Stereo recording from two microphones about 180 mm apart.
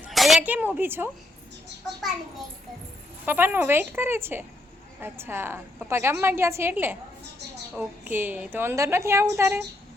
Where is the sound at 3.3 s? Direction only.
10° right (ahead or behind).